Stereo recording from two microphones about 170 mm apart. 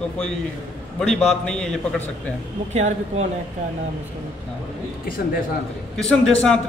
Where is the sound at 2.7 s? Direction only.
45° right (ahead or behind).